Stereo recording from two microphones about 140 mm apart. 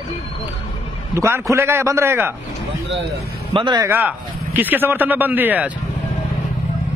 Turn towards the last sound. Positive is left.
turn(degrees=-10)  # may be behind; listen again after turning